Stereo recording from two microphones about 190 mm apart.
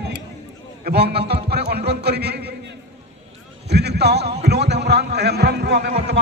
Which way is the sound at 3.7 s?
60° right (ahead or behind).